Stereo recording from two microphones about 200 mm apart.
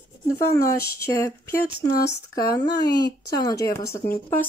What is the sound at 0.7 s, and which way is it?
Speech, 15° left (ahead or behind).